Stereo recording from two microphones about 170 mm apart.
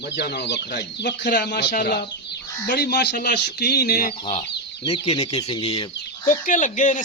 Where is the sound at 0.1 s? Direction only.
80° left.